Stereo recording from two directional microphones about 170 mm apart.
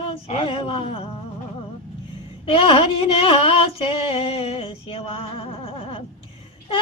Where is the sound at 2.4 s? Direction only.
30° left (ahead or behind).